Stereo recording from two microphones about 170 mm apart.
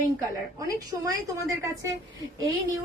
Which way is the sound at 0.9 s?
20° right (ahead or behind).